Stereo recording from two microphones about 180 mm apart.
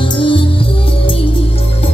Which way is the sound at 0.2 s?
30° left (ahead or behind).